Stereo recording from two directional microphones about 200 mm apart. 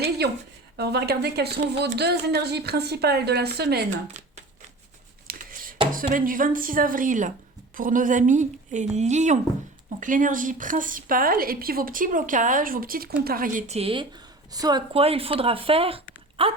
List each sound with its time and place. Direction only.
0.8 s speech: 55° right (ahead or behind)
4.1 s shuffling cards: 35° right (ahead or behind)
5.3 s a sound: 45° right (ahead or behind)
5.9 s a woman's voice: 45° right (ahead or behind); by 16.5 s 30° right (ahead or behind)